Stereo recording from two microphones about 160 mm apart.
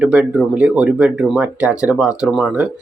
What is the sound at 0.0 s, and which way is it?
Speech, 5° right (ahead or behind).